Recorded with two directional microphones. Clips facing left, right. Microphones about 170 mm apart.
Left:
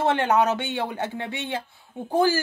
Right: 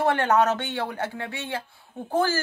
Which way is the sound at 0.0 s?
20° left (ahead or behind).